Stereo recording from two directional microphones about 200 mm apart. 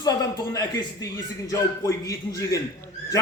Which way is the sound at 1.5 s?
15° left (ahead or behind).